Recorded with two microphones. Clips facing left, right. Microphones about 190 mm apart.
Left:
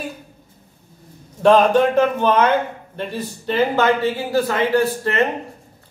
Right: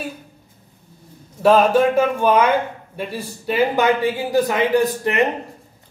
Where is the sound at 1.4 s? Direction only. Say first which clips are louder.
Left 1 dB; 5° right (ahead or behind).